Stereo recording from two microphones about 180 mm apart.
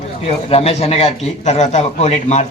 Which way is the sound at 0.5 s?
35° left (ahead or behind).